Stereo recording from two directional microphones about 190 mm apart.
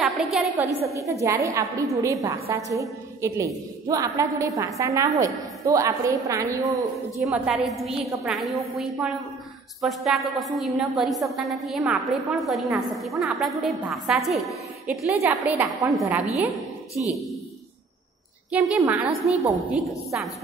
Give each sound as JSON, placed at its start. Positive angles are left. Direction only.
{"t": 0.0, "sound": "a woman's voice", "side_deg": 0}
{"t": 7.2, "sound": "a woman's voice", "side_deg": 0}
{"t": 9.8, "sound": "a woman's voice", "side_deg": 0}
{"t": 15.2, "sound": "a woman's voice", "side_deg": -10}
{"t": 15.9, "sound": "a woman's voice", "side_deg": 0}
{"t": 18.5, "sound": "a woman's voice", "side_deg": -10}